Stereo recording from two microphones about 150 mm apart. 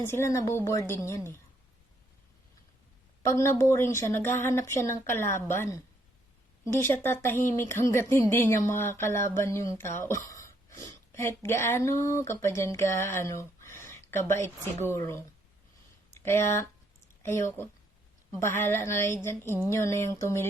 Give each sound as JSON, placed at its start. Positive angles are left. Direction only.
{"t": 0.0, "sound": "speech", "side_deg": 15}
{"t": 3.2, "sound": "speech", "side_deg": 20}
{"t": 18.3, "sound": "speech", "side_deg": 20}